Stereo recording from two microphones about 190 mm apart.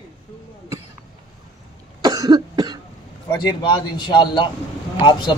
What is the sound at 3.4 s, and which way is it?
A man's voice, 25° left (ahead or behind).